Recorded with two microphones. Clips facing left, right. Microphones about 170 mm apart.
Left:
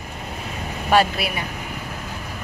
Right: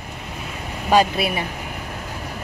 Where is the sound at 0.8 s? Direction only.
20° right (ahead or behind).